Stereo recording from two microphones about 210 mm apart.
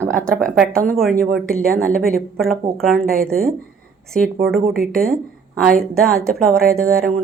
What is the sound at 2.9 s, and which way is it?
Speech, 45° right (ahead or behind).